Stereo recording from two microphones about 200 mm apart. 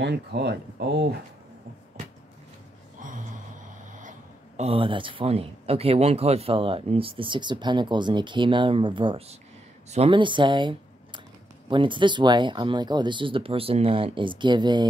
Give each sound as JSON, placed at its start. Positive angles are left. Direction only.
{"t": 0.0, "sound": "speech", "side_deg": -55}
{"t": 4.6, "sound": "speech", "side_deg": -30}